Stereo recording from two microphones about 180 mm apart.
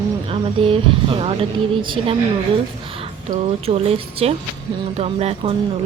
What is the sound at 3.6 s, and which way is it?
Speech, 35° right (ahead or behind).